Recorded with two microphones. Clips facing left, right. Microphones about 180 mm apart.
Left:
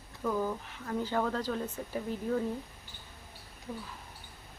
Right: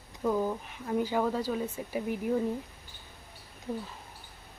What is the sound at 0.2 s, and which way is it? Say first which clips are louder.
Speech: right 3 dB; 20° right (ahead or behind).